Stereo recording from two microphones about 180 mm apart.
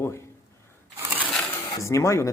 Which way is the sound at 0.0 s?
15° left (ahead or behind).